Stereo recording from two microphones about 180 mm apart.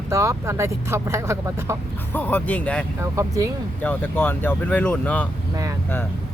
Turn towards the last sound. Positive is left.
turn(degrees=10)  # may be behind; listen again after turning